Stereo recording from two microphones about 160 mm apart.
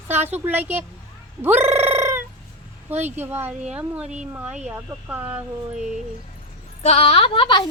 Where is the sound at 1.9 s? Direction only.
15° right (ahead or behind).